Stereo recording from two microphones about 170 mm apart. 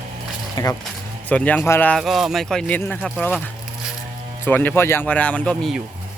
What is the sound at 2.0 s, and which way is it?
Speech, centre (ahead or behind).